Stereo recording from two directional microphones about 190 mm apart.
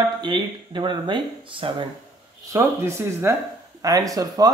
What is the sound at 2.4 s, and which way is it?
Speech, 15° right (ahead or behind).